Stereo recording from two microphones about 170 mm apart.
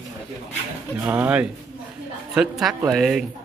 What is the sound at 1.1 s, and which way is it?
Speech, 5° right (ahead or behind).